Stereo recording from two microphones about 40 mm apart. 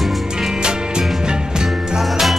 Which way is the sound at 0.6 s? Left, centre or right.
Centre.